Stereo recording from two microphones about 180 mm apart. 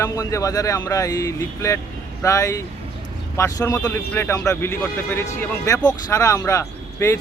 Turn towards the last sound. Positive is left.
turn(degrees=15)  # may be behind; listen again after turning